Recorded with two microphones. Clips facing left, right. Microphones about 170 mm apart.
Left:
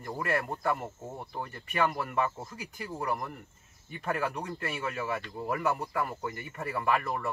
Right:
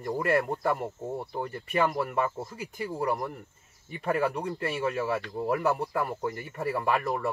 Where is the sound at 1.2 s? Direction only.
30° right (ahead or behind).